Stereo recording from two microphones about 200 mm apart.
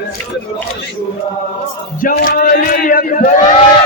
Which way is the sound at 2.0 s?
45° left (ahead or behind).